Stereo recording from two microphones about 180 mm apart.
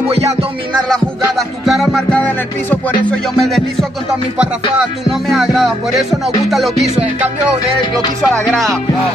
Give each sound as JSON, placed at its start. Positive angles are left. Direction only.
{"t": 0.1, "sound": "music", "side_deg": -35}
{"t": 1.7, "sound": "music", "side_deg": 0}
{"t": 5.3, "sound": "music", "side_deg": 0}